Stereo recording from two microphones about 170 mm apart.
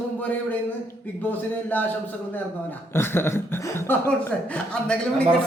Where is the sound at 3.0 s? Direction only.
15° left (ahead or behind).